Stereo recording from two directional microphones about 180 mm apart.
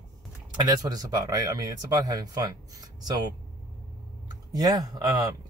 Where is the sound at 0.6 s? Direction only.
20° right (ahead or behind).